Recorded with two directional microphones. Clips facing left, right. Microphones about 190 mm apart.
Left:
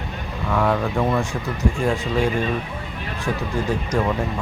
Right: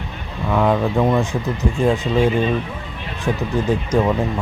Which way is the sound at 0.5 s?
20° right (ahead or behind).